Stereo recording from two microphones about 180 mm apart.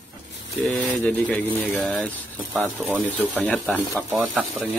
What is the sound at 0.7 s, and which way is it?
Speech, 5° left (ahead or behind).